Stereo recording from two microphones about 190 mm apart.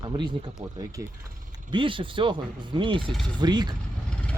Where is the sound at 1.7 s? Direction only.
25° right (ahead or behind).